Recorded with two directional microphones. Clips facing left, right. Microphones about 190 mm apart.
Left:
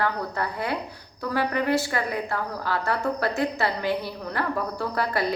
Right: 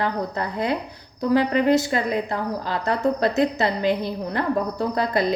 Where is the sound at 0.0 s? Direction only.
20° right (ahead or behind).